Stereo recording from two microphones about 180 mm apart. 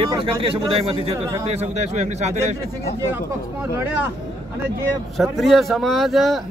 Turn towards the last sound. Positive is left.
turn(degrees=0)  # may be behind; listen again after turning